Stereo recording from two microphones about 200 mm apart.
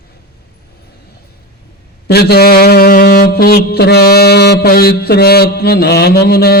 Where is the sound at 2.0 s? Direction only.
55° left (ahead or behind).